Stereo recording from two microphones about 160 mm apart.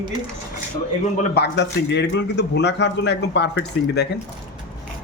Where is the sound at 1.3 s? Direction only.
90° left.